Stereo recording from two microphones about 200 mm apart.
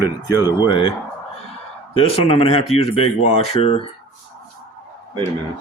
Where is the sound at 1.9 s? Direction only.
30° left (ahead or behind).